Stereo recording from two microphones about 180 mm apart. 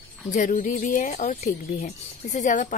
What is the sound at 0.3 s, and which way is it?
A woman's voice, 45° left (ahead or behind).